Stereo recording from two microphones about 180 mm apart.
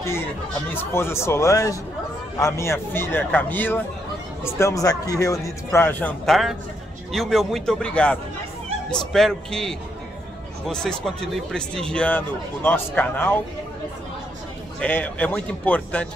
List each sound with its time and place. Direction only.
0.9 s a man's voice: 15° left (ahead or behind)
14.8 s speech: 10° left (ahead or behind)